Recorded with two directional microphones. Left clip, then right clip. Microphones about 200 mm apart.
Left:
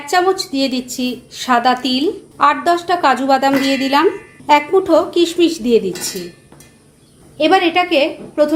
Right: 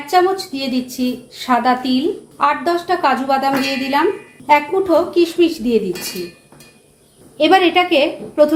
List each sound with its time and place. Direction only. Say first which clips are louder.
0.0 s a woman's voice: even; 35° left (ahead or behind)
7.3 s a woman's voice: right 1 dB; 5° left (ahead or behind)